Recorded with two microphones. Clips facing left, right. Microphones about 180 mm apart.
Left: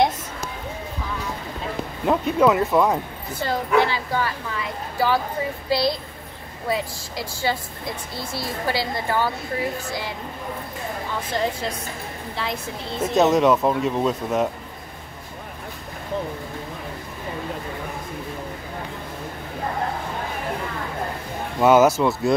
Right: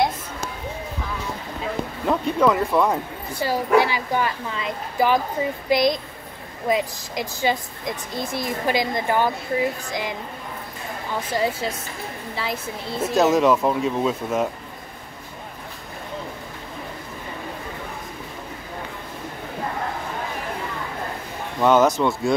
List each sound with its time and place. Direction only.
2.0 s speech: 5° left (ahead or behind)
3.3 s a woman's voice: 10° right (ahead or behind)
11.3 s speech: 5° right (ahead or behind)
21.5 s speech: 10° left (ahead or behind)